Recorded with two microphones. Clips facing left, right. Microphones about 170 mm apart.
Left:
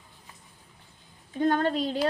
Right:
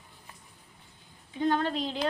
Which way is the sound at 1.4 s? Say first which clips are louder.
Left 3 dB; 50° left (ahead or behind).